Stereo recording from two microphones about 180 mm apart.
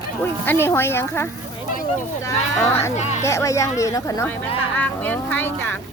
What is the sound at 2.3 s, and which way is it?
Speech, 15° left (ahead or behind).